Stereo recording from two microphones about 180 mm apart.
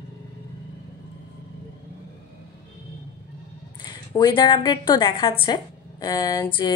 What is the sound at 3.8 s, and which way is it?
A woman's voice, 20° left (ahead or behind).